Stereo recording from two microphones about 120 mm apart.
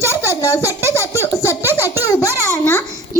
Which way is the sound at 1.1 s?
20° left (ahead or behind).